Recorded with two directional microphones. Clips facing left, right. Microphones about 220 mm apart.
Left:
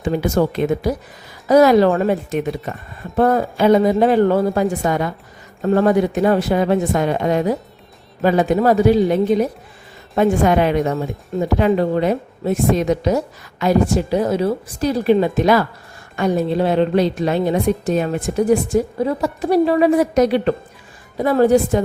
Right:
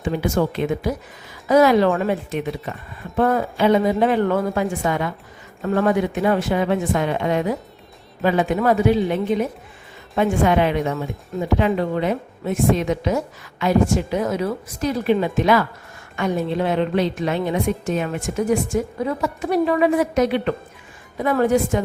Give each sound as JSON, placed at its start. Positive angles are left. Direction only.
{"t": 0.0, "sound": "a woman's voice", "side_deg": 40}